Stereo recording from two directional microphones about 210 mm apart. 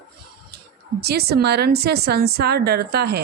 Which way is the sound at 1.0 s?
50° right (ahead or behind).